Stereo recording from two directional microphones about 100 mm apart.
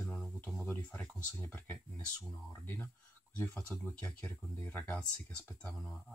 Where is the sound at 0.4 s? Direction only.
25° left (ahead or behind).